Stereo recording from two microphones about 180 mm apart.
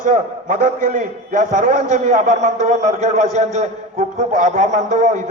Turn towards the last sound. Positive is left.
turn(degrees=-45)  # may be behind; listen again after turning